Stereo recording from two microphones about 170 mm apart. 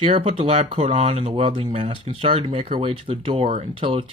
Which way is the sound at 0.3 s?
35° right (ahead or behind).